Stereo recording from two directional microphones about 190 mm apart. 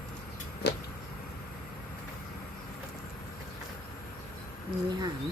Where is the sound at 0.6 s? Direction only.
60° left (ahead or behind).